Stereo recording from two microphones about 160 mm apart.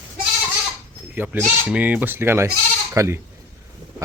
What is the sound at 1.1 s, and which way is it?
Speech, 10° right (ahead or behind).